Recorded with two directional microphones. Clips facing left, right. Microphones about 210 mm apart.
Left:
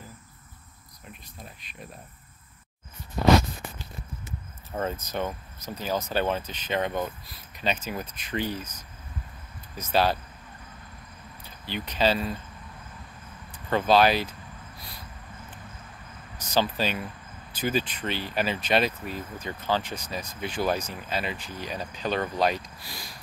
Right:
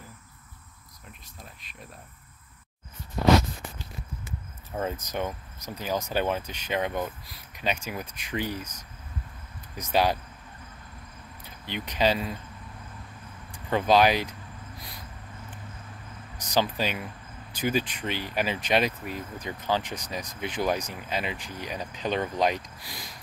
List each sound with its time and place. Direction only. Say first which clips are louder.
1.4 s speech: left 1 dB; centre (ahead or behind)
4.7 s speech: left 1 dB; 10° right (ahead or behind)
9.8 s speech: even; 15° right (ahead or behind)
11.6 s speech: even; 15° right (ahead or behind)
13.5 s speech: even; 15° right (ahead or behind)
16.3 s speech: even; 15° right (ahead or behind)